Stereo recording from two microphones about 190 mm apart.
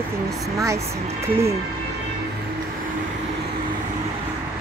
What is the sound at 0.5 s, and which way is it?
Speech, 15° right (ahead or behind).